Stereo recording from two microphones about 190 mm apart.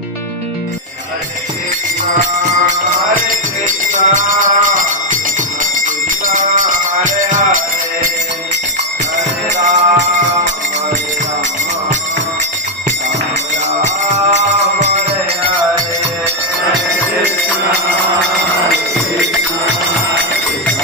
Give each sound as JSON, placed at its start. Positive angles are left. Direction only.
{"t": 2.1, "sound": "music", "side_deg": -40}
{"t": 9.1, "sound": "music", "side_deg": -40}
{"t": 14.0, "sound": "music", "side_deg": -35}